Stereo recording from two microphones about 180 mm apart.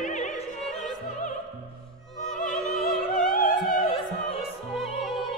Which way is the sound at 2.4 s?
45° left (ahead or behind).